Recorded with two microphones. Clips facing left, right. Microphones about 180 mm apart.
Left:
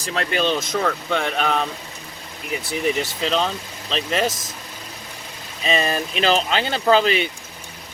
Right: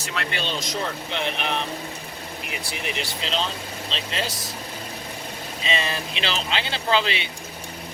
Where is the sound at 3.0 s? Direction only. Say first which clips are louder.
Left 6 dB; 45° left (ahead or behind).